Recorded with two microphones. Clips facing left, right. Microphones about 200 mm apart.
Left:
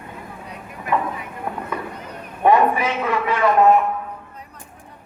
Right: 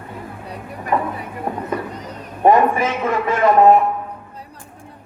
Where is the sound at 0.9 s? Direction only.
45° right (ahead or behind).